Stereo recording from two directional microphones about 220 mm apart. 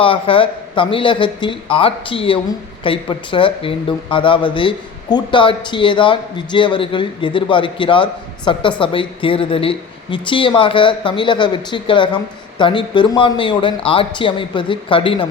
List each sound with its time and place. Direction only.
0.0 s speech: 25° left (ahead or behind)